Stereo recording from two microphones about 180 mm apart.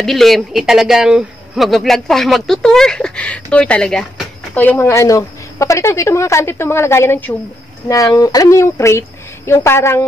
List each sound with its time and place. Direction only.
0.0 s a man's voice: centre (ahead or behind)